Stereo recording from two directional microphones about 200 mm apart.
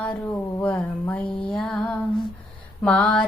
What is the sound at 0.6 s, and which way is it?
Child singing, 5° left (ahead or behind).